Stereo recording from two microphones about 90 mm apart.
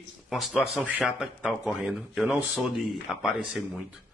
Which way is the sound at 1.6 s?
5° right (ahead or behind).